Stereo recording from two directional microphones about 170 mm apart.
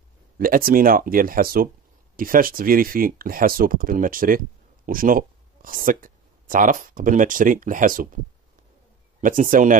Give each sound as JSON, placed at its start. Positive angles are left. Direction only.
{"t": 0.4, "sound": "speech", "side_deg": -55}
{"t": 9.2, "sound": "speech", "side_deg": -50}